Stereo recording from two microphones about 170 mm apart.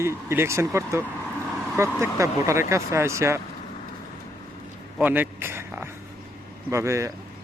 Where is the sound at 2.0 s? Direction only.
15° right (ahead or behind).